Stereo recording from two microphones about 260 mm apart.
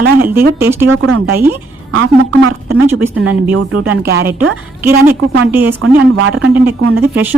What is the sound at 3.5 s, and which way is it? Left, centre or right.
Speech, right.